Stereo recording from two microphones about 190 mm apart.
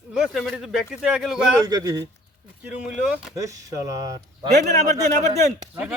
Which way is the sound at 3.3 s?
15° right (ahead or behind).